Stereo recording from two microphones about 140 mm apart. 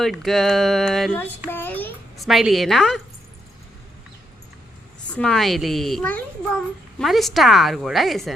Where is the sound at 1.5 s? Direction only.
15° left (ahead or behind).